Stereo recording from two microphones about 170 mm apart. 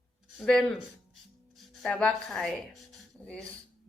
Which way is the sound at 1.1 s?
Centre (ahead or behind).